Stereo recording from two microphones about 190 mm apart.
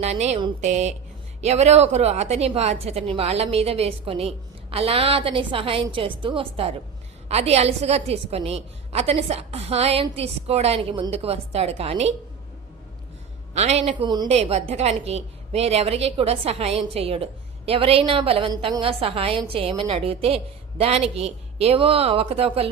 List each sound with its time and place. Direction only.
0.0 s a woman's voice: 35° right (ahead or behind)
13.5 s a woman's voice: 35° right (ahead or behind)